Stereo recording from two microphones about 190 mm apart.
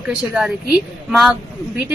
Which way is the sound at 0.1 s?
5° right (ahead or behind).